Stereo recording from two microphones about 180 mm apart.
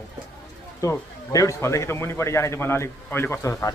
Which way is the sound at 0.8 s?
20° left (ahead or behind).